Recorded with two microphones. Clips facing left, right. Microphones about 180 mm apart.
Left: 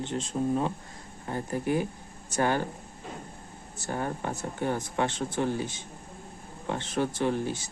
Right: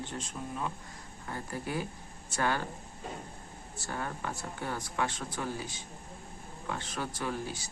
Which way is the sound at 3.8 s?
25° left (ahead or behind).